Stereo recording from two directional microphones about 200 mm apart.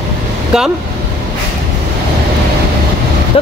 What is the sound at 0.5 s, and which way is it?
Speech, 5° right (ahead or behind).